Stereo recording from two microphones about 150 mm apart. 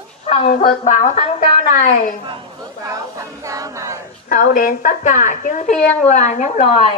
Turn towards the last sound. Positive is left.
turn(degrees=50)  # may be behind; listen again after turning